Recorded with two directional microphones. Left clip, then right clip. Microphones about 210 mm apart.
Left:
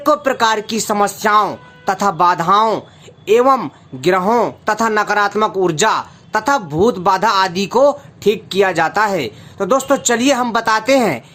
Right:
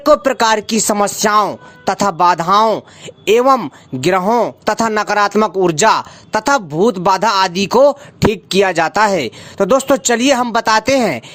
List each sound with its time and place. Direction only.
0.0 s speech: 35° right (ahead or behind)